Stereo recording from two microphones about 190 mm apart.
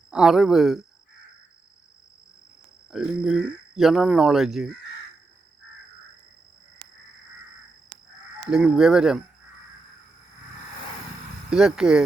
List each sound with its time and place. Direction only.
0.1 s speech: 5° right (ahead or behind)
2.9 s speech: centre (ahead or behind)
8.4 s speech: 5° right (ahead or behind)
11.5 s speech: 5° right (ahead or behind)